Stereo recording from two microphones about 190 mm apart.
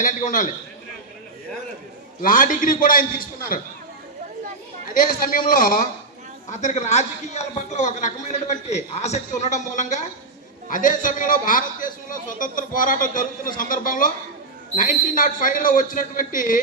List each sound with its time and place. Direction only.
0.0 s a man's voice: 45° left (ahead or behind)
2.2 s a man's voice: 45° left (ahead or behind)
4.9 s a man's voice: 45° left (ahead or behind)